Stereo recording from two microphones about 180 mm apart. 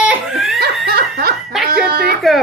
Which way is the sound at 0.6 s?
60° right (ahead or behind).